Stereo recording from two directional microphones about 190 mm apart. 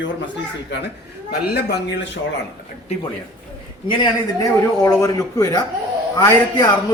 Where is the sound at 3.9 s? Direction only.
20° left (ahead or behind).